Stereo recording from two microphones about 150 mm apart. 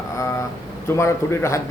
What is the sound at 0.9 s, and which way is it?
Speech, 15° left (ahead or behind).